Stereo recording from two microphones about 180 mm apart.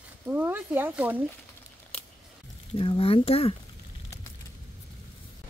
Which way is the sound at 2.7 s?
30° left (ahead or behind).